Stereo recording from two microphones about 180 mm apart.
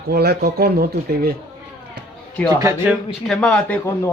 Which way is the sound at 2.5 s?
20° right (ahead or behind).